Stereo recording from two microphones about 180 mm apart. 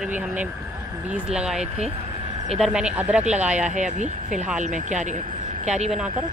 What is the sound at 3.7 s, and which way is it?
Speech, 40° right (ahead or behind).